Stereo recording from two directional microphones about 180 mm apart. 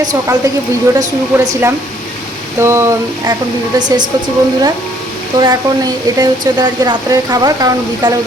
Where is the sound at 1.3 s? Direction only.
10° right (ahead or behind).